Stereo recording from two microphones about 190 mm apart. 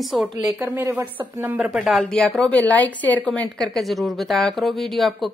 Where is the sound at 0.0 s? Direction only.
Centre (ahead or behind).